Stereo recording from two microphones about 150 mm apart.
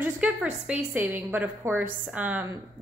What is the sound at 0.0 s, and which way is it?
A woman's voice, 10° right (ahead or behind).